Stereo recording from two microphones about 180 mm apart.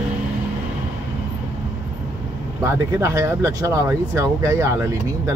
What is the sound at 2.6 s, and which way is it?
Speech, 15° right (ahead or behind).